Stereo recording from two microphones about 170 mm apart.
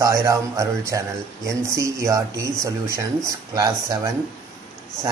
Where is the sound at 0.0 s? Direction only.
20° right (ahead or behind).